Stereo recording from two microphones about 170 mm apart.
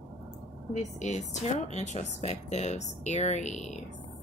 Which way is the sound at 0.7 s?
45° left (ahead or behind).